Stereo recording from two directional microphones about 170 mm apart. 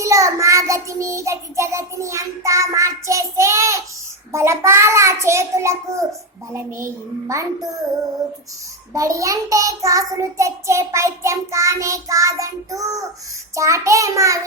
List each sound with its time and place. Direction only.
0.0 s child singing: 20° right (ahead or behind)
4.3 s a child's voice: 15° right (ahead or behind)
8.9 s child singing: 20° right (ahead or behind)
13.6 s a child's voice: 20° right (ahead or behind)